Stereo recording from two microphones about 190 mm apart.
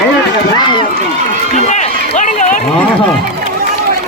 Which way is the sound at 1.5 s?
35° left (ahead or behind).